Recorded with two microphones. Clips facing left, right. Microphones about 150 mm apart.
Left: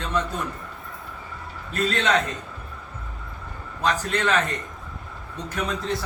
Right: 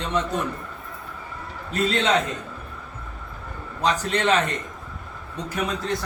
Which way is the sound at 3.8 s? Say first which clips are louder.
Right 2 dB; 15° right (ahead or behind).